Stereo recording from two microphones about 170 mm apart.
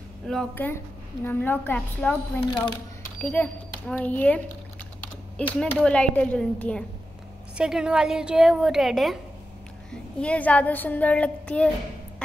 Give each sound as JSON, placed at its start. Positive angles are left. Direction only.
{"t": 0.3, "sound": "a woman's voice", "side_deg": 5}